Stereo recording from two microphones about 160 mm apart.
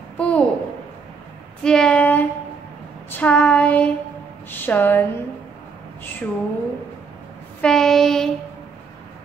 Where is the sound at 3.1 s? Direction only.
10° left (ahead or behind).